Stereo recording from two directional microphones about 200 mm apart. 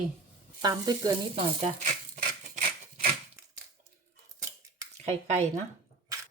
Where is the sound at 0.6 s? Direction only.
20° right (ahead or behind).